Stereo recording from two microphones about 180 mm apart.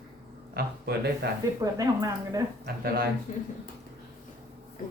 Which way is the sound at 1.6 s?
20° right (ahead or behind).